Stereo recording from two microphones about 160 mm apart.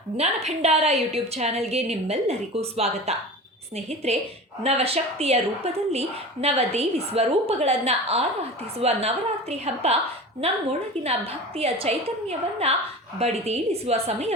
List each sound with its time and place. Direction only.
0.4 s a woman's voice: 40° right (ahead or behind)